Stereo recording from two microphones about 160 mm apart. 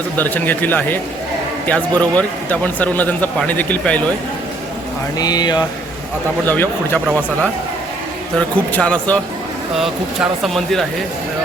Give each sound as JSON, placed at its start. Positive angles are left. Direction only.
{"t": 0.2, "sound": "speech", "side_deg": 10}
{"t": 5.1, "sound": "speech", "side_deg": 25}
{"t": 6.5, "sound": "speech", "side_deg": 10}
{"t": 8.4, "sound": "speech", "side_deg": 5}